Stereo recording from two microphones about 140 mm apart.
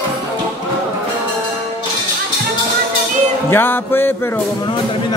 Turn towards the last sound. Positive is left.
turn(degrees=15)  # may be behind; listen again after turning